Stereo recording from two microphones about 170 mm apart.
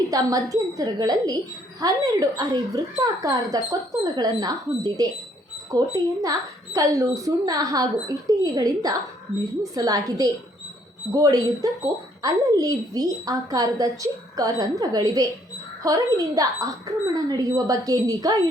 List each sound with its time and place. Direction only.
0.1 s a woman's voice: 20° right (ahead or behind)